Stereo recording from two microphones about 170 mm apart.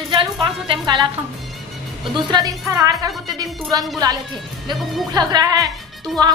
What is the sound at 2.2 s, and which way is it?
A woman's voice, 25° right (ahead or behind).